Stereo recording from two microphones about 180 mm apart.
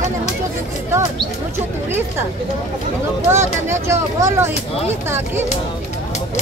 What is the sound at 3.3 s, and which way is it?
Speech, 15° right (ahead or behind).